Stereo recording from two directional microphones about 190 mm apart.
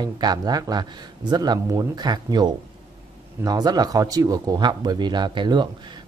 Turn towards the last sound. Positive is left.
turn(degrees=-25)  # may be behind; listen again after turning